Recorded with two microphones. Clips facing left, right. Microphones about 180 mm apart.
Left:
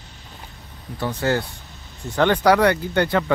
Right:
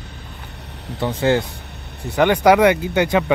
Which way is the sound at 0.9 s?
25° right (ahead or behind).